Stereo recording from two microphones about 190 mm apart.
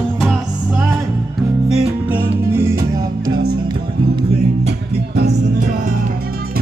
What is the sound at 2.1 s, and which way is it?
Music, 15° right (ahead or behind).